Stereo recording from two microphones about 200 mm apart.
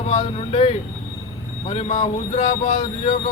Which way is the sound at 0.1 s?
35° left (ahead or behind).